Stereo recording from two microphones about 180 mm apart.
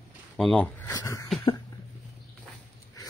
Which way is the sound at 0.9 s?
20° left (ahead or behind).